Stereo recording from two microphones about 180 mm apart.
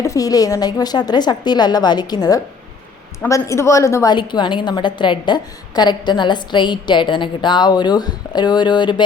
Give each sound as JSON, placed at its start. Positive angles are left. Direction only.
{"t": 0.0, "sound": "a woman's voice", "side_deg": 20}